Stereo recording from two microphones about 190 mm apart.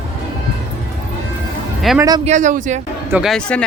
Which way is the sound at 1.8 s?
Centre (ahead or behind).